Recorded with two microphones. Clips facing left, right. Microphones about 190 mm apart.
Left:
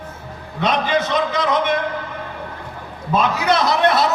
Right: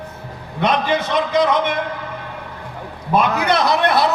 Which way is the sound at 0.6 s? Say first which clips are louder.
Right 1 dB; 60° right (ahead or behind).